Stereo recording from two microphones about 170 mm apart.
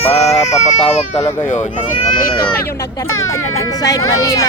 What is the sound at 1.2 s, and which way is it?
Speech, 15° left (ahead or behind).